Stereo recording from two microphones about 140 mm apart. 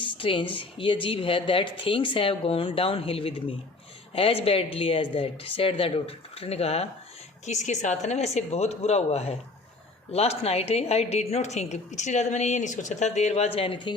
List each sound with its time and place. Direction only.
0.0 s a woman's voice: 40° left (ahead or behind)